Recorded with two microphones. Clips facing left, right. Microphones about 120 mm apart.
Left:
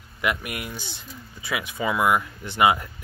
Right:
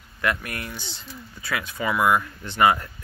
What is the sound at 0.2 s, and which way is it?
Speech, 15° left (ahead or behind).